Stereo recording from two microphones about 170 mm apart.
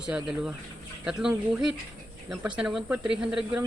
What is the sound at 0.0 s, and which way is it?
Speech, 5° right (ahead or behind).